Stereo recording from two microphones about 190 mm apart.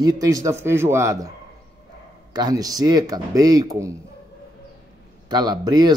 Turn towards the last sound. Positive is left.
turn(degrees=-20)  # may be behind; listen again after turning